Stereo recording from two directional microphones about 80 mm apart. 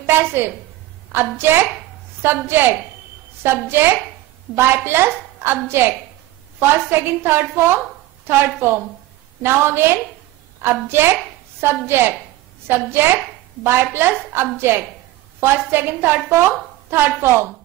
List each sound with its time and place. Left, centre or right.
0.0 s a woman's voice: right